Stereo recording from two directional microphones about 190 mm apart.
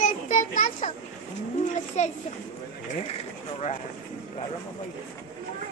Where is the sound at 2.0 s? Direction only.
35° left (ahead or behind).